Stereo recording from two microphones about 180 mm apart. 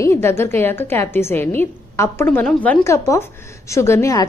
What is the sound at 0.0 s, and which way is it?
A woman's voice, 15° left (ahead or behind).